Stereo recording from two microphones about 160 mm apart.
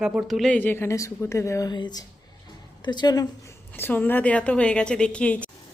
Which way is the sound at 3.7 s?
10° left (ahead or behind).